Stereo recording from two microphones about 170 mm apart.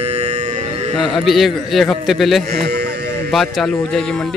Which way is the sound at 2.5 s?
65° right (ahead or behind).